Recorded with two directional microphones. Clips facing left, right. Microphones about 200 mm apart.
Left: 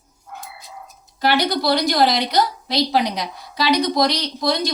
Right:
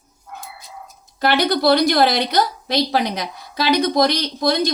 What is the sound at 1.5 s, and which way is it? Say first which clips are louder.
A woman's voice: right 4 dB; 55° right (ahead or behind).